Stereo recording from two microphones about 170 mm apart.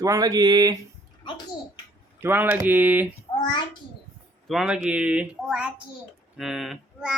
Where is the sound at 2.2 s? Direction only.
10° right (ahead or behind).